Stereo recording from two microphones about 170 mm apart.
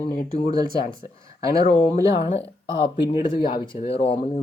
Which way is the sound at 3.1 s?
30° left (ahead or behind).